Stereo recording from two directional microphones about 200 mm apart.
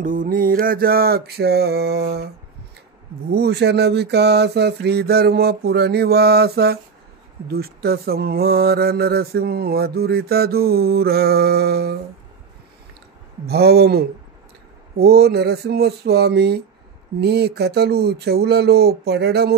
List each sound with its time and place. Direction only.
0.0 s mantra: 45° right (ahead or behind)
13.5 s mantra: 50° right (ahead or behind)